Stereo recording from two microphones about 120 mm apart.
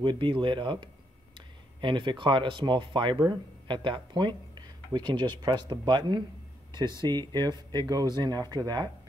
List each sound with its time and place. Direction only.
0.0 s speech: 40° right (ahead or behind)